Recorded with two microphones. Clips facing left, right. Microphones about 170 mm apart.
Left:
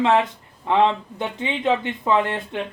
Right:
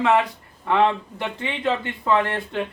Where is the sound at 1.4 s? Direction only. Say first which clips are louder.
Left 3 dB; 20° left (ahead or behind).